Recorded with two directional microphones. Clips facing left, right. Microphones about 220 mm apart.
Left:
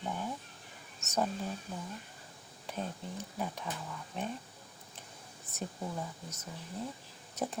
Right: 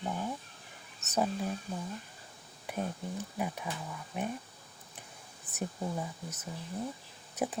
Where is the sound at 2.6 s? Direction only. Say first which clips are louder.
Right 3 dB; 10° right (ahead or behind).